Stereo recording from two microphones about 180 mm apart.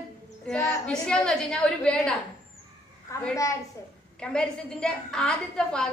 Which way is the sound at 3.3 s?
15° left (ahead or behind).